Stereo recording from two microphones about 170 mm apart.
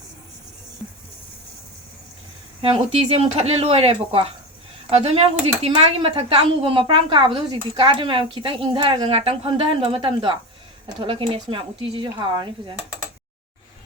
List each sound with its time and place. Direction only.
2.6 s speech: 35° right (ahead or behind)